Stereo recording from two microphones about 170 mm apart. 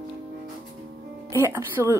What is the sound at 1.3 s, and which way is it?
Speech, 15° right (ahead or behind).